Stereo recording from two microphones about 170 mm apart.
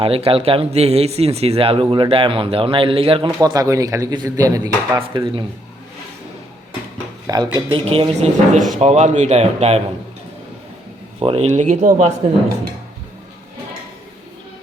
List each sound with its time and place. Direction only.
0.0 s speech: 35° right (ahead or behind)
5.0 s speech: 30° right (ahead or behind)
7.3 s speech: 25° right (ahead or behind); by 9.8 s 40° right (ahead or behind)
11.2 s speech: 35° right (ahead or behind)